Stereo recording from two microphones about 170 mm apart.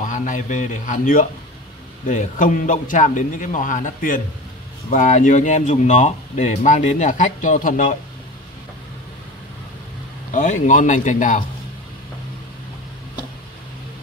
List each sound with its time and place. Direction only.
0.0 s speech: 50° left (ahead or behind)
10.3 s speech: 45° left (ahead or behind)